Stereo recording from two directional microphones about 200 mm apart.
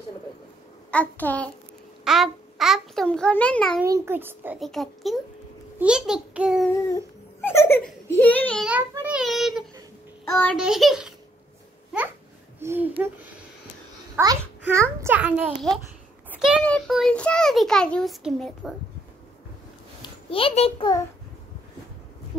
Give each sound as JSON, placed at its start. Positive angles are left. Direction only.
{"t": 0.9, "sound": "a child's voice", "side_deg": 10}
{"t": 3.8, "sound": "a child's voice", "side_deg": -15}
{"t": 4.6, "sound": "a child's voice", "side_deg": 0}
{"t": 7.4, "sound": "a child's voice", "side_deg": 10}
{"t": 8.6, "sound": "child singing", "side_deg": -10}
{"t": 10.4, "sound": "a child's voice", "side_deg": 0}
{"t": 12.5, "sound": "a sound", "side_deg": -10}
{"t": 14.1, "sound": "a child's voice", "side_deg": -15}
{"t": 16.4, "sound": "a child's voice", "side_deg": 5}
{"t": 20.0, "sound": "a child's voice", "side_deg": 25}